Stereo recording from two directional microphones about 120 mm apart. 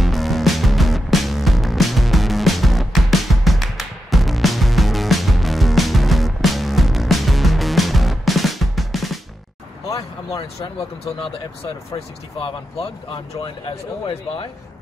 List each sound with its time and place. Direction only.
0.0 s music: centre (ahead or behind)
9.8 s a sound: 30° left (ahead or behind)
12.4 s speech: 50° left (ahead or behind)